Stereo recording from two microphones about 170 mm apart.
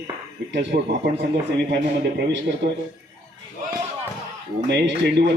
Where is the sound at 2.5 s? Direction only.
65° right (ahead or behind).